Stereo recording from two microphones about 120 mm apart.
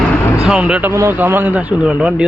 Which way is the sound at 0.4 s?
10° right (ahead or behind).